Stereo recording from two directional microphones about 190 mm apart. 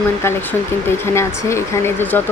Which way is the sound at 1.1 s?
15° left (ahead or behind).